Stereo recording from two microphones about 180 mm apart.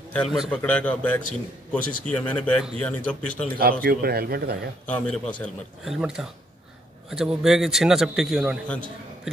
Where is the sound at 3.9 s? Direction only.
60° right (ahead or behind).